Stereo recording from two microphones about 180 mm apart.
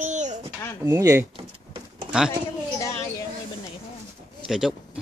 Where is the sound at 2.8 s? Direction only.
15° left (ahead or behind).